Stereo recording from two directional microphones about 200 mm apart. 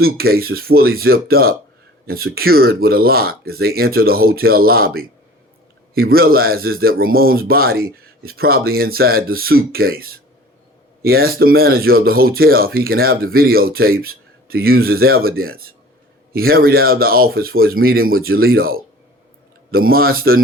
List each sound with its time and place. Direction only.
0.0 s speech: 50° right (ahead or behind)